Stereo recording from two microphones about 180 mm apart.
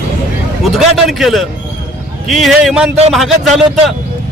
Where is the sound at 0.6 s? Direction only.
Centre (ahead or behind).